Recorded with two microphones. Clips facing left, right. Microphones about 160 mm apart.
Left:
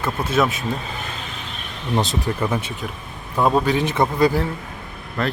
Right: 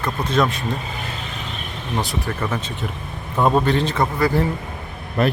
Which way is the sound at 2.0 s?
20° left (ahead or behind).